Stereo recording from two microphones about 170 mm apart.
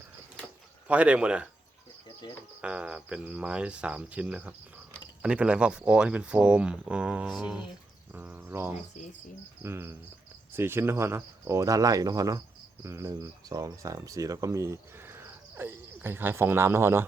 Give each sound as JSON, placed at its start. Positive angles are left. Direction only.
{"t": 0.9, "sound": "speech", "side_deg": -5}
{"t": 2.6, "sound": "speech", "side_deg": -5}
{"t": 8.1, "sound": "insect", "side_deg": -10}
{"t": 9.6, "sound": "speech", "side_deg": -15}